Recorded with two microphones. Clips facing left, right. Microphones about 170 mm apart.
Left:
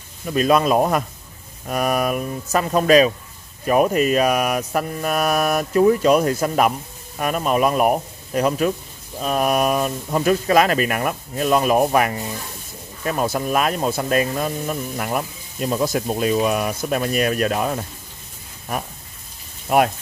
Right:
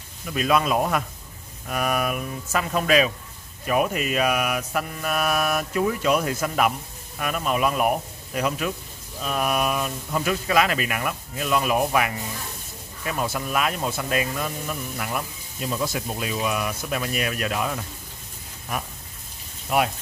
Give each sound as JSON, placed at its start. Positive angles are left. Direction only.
{"t": 0.3, "sound": "mantra", "side_deg": 40}
{"t": 9.2, "sound": "speech", "side_deg": 40}
{"t": 19.7, "sound": "speech", "side_deg": 50}